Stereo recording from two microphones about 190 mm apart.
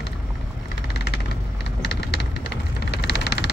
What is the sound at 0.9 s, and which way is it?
Vehicle, 60° left (ahead or behind).